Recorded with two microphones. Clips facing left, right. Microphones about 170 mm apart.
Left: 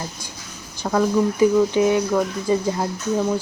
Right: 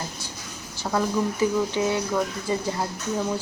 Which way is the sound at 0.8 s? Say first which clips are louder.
Left 4 dB; 5° left (ahead or behind).